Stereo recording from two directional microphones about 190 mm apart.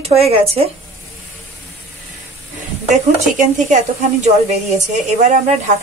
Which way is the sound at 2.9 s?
40° right (ahead or behind).